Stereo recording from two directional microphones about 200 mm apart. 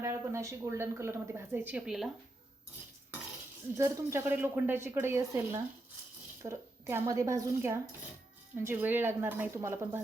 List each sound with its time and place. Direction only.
0.0 s a woman's voice: 15° right (ahead or behind)
3.8 s a woman's voice: 15° right (ahead or behind)